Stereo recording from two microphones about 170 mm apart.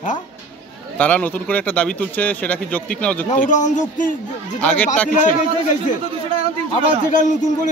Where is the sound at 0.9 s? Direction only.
10° left (ahead or behind).